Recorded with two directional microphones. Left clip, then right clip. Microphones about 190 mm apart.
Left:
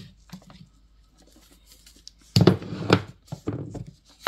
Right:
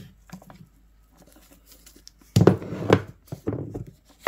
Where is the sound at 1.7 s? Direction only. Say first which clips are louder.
Left 3 dB; 40° right (ahead or behind).